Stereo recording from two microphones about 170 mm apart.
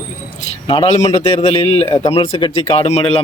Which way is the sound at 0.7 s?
35° left (ahead or behind).